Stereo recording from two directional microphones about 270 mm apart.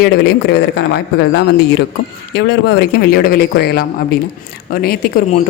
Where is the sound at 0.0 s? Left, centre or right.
Left.